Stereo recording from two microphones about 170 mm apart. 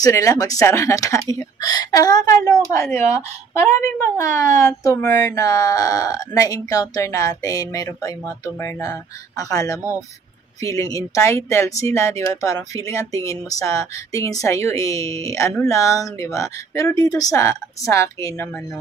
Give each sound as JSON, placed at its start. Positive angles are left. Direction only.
{"t": 0.0, "sound": "speech", "side_deg": 20}